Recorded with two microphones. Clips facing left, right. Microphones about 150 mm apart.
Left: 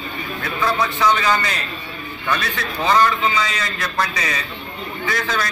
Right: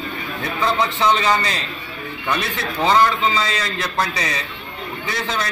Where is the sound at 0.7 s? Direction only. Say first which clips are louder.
Even; 25° right (ahead or behind).